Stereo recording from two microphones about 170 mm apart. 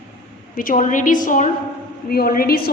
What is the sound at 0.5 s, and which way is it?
A woman's voice, 55° left (ahead or behind).